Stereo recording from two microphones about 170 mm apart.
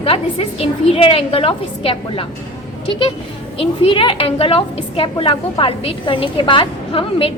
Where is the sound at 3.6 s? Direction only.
35° left (ahead or behind).